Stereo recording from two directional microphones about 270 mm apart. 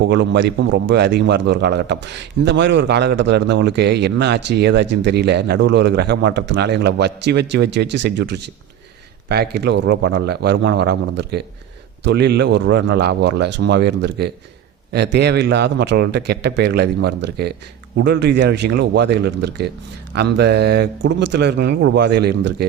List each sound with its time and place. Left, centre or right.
0.0 s a man's voice: right